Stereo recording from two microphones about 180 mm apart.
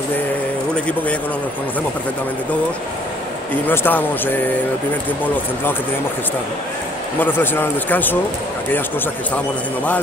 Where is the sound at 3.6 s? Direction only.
10° left (ahead or behind).